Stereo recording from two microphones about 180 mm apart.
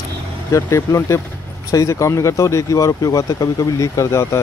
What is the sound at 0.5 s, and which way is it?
Speech, 15° left (ahead or behind).